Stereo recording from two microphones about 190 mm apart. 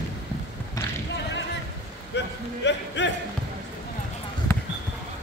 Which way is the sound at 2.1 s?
70° left (ahead or behind).